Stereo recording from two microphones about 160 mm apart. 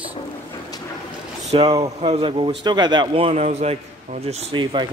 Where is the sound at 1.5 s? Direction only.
35° right (ahead or behind).